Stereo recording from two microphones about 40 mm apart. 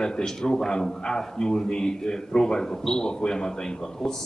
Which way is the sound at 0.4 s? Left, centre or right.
Centre.